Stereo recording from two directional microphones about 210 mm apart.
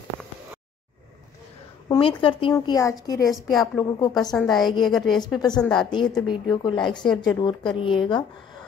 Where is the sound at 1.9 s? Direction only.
25° left (ahead or behind).